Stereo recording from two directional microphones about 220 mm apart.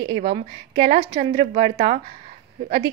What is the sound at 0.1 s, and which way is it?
A woman's voice, 25° right (ahead or behind).